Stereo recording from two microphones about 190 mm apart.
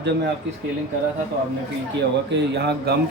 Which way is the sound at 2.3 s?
60° right (ahead or behind).